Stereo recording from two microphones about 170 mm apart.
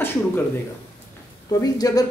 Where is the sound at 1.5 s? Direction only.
20° left (ahead or behind).